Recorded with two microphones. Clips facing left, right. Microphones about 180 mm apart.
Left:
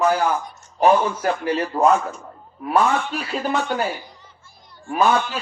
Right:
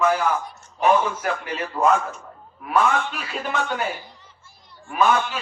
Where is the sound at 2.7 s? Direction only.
35° left (ahead or behind).